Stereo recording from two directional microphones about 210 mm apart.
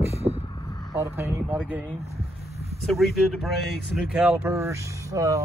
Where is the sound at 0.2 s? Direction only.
25° right (ahead or behind).